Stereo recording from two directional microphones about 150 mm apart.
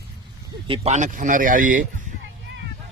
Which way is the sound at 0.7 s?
50° right (ahead or behind).